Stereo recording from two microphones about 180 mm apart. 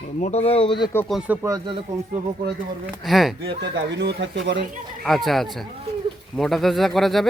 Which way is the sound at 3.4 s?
70° right (ahead or behind).